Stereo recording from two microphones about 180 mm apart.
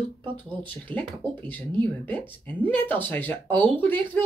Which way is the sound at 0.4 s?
10° left (ahead or behind).